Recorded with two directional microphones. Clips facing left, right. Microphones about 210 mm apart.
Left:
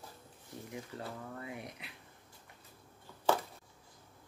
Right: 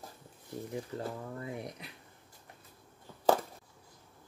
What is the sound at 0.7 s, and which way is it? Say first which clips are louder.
Speech: right 5 dB; 35° right (ahead or behind).